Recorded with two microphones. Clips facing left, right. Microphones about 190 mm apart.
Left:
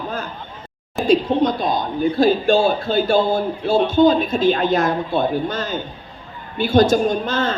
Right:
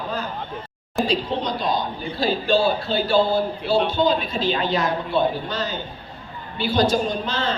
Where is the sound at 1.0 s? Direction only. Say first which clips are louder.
Left 8 dB; 50° left (ahead or behind).